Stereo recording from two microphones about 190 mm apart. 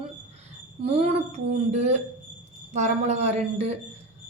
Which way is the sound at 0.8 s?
35° right (ahead or behind).